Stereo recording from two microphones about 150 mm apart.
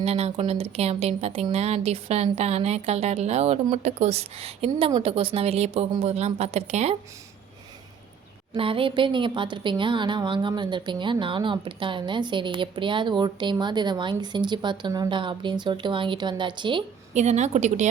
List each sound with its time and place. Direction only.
0.0 s a woman's voice: 45° right (ahead or behind)
8.5 s speech: 35° right (ahead or behind)
17.2 s a woman's voice: 50° right (ahead or behind)